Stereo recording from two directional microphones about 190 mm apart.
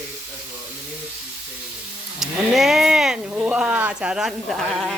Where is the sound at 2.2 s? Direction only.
Centre (ahead or behind).